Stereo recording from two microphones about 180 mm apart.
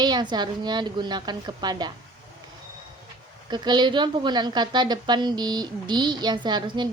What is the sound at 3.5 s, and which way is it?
A woman's voice, 25° right (ahead or behind).